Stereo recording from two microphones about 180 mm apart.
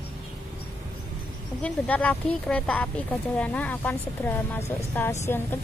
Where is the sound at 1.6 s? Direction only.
10° left (ahead or behind).